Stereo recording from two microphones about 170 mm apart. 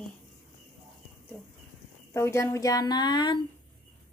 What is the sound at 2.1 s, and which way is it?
Speech, 15° left (ahead or behind).